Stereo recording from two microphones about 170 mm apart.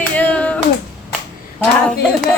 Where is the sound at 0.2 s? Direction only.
10° left (ahead or behind).